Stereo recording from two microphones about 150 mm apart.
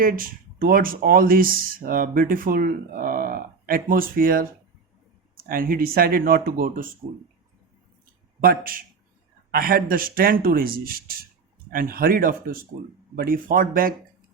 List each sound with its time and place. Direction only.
0.0 s speech: 70° right (ahead or behind)
8.4 s speech: 75° right (ahead or behind)